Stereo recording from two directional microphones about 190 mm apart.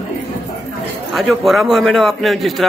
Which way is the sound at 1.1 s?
Centre (ahead or behind).